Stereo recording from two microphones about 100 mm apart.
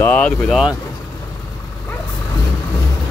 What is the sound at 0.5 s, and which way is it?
Speech, 5° right (ahead or behind).